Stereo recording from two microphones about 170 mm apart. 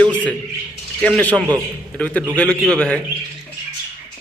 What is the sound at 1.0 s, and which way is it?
A man's voice, 5° left (ahead or behind).